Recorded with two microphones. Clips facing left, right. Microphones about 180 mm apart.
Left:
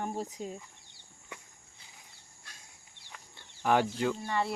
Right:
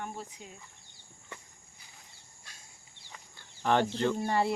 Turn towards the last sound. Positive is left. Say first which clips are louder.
# right 3 dB
turn(degrees=-35)  # may be behind; listen again after turning